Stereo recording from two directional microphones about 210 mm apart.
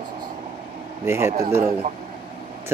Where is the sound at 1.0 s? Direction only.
10° right (ahead or behind).